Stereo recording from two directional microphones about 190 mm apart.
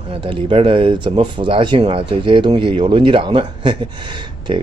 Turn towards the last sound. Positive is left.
turn(degrees=-25)  # may be behind; listen again after turning